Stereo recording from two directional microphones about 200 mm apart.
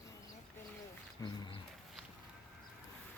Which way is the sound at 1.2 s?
15° left (ahead or behind).